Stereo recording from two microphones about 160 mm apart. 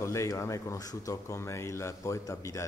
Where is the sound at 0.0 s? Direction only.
20° left (ahead or behind).